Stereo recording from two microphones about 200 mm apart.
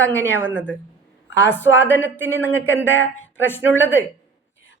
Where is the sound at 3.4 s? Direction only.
10° left (ahead or behind).